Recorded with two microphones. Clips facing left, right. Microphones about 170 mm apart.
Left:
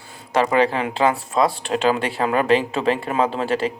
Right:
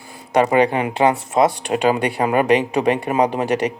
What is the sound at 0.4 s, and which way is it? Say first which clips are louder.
Speech: even; 15° right (ahead or behind).